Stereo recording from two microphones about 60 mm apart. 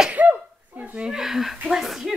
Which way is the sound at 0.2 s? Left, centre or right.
Right.